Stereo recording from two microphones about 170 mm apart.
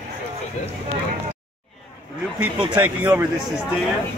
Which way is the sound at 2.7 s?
10° right (ahead or behind).